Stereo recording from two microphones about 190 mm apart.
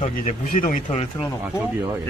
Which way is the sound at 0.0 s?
40° left (ahead or behind).